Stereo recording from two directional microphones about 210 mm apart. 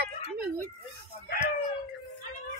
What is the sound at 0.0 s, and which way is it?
Children playing, 50° right (ahead or behind).